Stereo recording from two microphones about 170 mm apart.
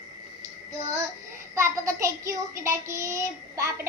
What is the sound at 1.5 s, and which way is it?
Child singing, 15° right (ahead or behind).